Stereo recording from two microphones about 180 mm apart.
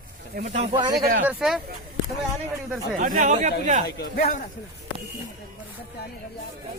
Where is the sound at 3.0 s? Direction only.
50° right (ahead or behind).